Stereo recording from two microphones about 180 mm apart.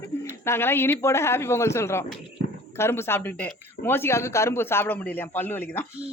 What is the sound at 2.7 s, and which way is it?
A man's voice, 15° left (ahead or behind).